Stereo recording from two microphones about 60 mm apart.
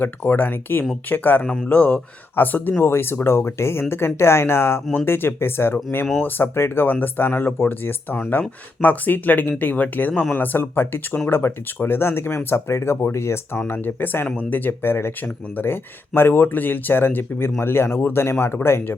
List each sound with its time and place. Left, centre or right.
0.3 s speech: left
2.7 s speech: left
13.7 s speech: left